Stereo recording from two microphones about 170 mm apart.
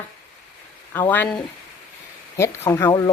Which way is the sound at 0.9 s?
10° left (ahead or behind).